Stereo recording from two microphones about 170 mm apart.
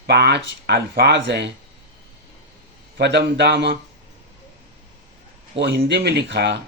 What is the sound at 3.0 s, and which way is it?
Speech, 80° right.